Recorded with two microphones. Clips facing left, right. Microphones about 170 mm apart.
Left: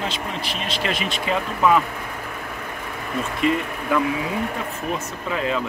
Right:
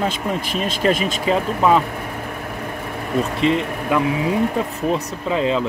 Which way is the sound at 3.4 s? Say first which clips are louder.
Left 1 dB; 25° right (ahead or behind).